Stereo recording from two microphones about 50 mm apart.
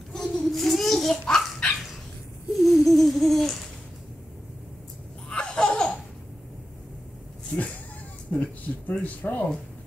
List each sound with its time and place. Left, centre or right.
0.1 s a sound: centre
1.2 s dog: centre
2.6 s rattle: centre
5.3 s laughter: centre
8.3 s a sound: left
9.2 s speech: left